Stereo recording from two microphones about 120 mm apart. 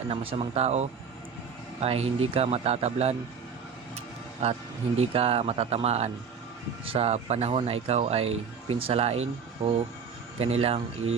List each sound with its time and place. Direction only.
0.1 s speech: 50° right (ahead or behind)
4.9 s speech: 55° right (ahead or behind)